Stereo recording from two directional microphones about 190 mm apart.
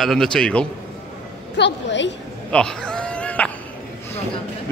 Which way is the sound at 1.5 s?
65° left (ahead or behind).